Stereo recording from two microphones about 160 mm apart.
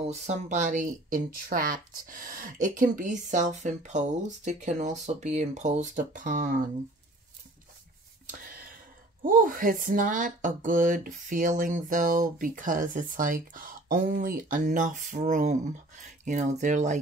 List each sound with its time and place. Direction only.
0.0 s speech: 45° right (ahead or behind)
8.3 s a sound: 65° right (ahead or behind)
9.2 s speech: 60° right (ahead or behind)